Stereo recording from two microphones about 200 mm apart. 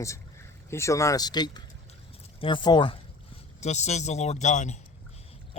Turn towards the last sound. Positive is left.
turn(degrees=35)  # may be behind; listen again after turning